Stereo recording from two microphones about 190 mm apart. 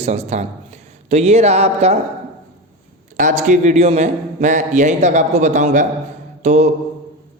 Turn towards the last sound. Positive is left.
turn(degrees=-35)  # may be behind; listen again after turning